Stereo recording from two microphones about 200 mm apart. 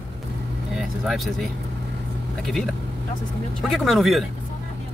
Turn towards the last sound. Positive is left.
turn(degrees=0)  # may be behind; listen again after turning